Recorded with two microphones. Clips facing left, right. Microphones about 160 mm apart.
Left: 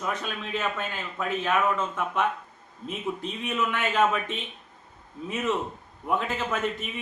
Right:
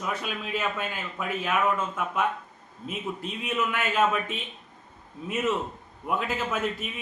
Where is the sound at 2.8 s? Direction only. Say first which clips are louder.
Left 2 dB; 5° right (ahead or behind).